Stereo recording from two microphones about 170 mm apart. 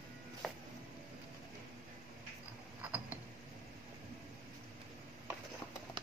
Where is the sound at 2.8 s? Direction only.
10° right (ahead or behind).